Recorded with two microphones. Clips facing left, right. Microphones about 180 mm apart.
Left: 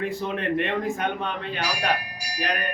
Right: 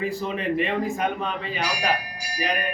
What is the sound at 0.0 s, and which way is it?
A man's voice, centre (ahead or behind).